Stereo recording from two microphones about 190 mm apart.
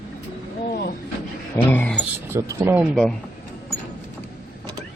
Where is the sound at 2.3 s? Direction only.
15° right (ahead or behind).